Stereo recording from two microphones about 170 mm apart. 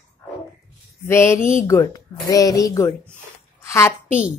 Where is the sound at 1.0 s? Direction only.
15° left (ahead or behind).